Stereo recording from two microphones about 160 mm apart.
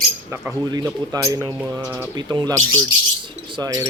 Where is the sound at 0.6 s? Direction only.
25° right (ahead or behind).